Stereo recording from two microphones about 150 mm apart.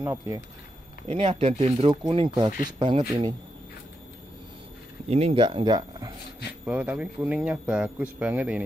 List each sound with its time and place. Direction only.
0.0 s speech: 20° right (ahead or behind)
1.0 s speech: 40° right (ahead or behind)
1.9 s speech: 30° right (ahead or behind)
3.1 s speech: 25° right (ahead or behind)
5.1 s speech: 40° right (ahead or behind)
6.6 s speech: 10° right (ahead or behind)